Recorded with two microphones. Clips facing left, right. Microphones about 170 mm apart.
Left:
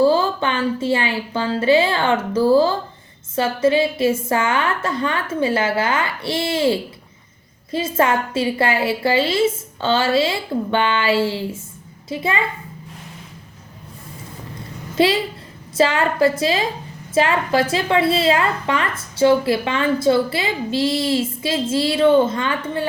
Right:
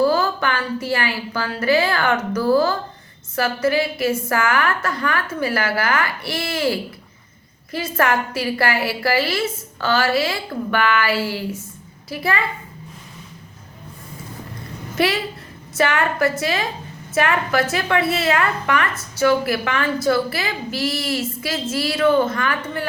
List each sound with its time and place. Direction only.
0.0 s a woman's voice: 25° left (ahead or behind)
14.9 s a woman's voice: 25° left (ahead or behind)